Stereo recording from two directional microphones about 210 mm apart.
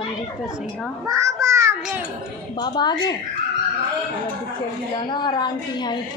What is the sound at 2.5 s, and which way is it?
Speech, 20° left (ahead or behind).